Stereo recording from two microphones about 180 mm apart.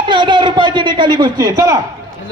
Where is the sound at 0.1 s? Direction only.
25° right (ahead or behind).